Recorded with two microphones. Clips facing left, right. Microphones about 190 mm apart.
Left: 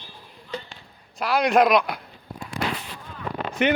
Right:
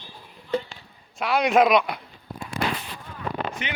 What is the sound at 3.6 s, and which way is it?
Speech, 60° left (ahead or behind).